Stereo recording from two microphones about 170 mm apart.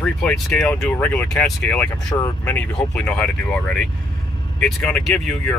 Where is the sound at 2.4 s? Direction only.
5° left (ahead or behind).